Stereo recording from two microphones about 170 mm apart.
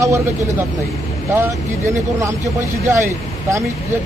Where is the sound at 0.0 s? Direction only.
15° right (ahead or behind).